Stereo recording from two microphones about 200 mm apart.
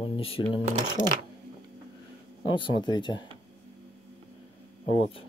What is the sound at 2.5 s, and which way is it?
Speech, 25° left (ahead or behind).